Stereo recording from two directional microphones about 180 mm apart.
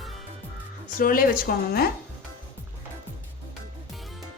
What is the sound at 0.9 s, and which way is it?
Speech, 50° left (ahead or behind).